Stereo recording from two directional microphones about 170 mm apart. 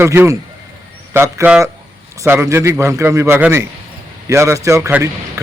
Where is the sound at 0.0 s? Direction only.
15° right (ahead or behind).